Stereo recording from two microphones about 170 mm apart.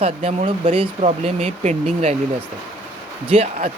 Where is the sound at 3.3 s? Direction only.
35° right (ahead or behind).